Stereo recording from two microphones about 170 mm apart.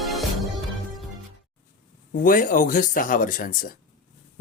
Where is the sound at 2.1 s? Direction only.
50° left (ahead or behind).